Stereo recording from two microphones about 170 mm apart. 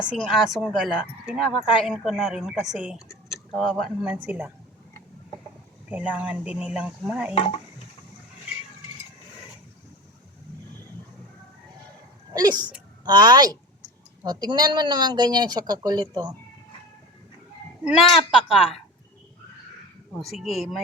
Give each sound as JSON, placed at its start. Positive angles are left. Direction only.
{"t": 0.0, "sound": "speech", "side_deg": 0}
{"t": 5.9, "sound": "speech", "side_deg": -10}
{"t": 7.3, "sound": "stir", "side_deg": 35}
{"t": 12.3, "sound": "speech", "side_deg": -25}
{"t": 17.8, "sound": "speech", "side_deg": 0}
{"t": 20.1, "sound": "speech", "side_deg": 0}